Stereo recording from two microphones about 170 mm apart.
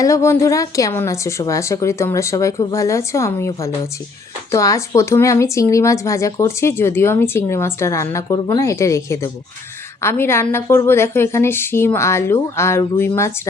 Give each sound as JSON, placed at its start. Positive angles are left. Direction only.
{"t": 0.0, "sound": "speech", "side_deg": 15}